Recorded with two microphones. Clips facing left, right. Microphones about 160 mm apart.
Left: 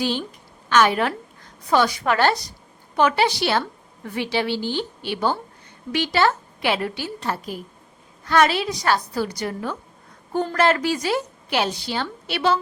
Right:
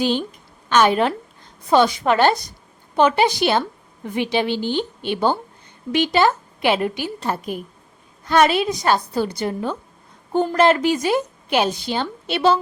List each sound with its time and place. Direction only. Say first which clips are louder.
0.0 s a woman's voice: right 4 dB; 20° right (ahead or behind)